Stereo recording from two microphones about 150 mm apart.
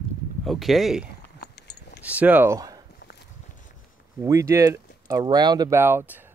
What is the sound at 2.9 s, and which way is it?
Walk, 90° left.